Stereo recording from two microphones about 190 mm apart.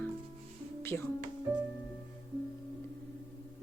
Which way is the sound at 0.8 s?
15° left (ahead or behind).